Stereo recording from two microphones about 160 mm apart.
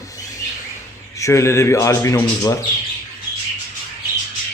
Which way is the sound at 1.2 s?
20° left (ahead or behind).